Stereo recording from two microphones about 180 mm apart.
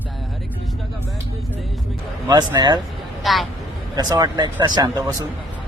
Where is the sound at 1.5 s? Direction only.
Centre (ahead or behind).